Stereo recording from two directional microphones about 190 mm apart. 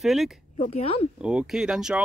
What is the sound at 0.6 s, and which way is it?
Speech, 30° left (ahead or behind).